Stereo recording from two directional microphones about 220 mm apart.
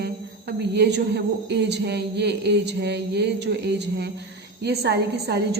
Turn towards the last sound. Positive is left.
turn(degrees=-50)  # may be behind; listen again after turning